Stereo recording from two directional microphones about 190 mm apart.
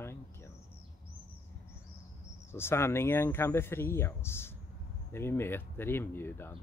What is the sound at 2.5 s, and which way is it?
Speech, 15° left (ahead or behind).